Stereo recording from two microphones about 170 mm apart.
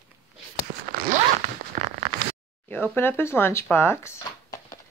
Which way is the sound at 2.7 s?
10° left (ahead or behind).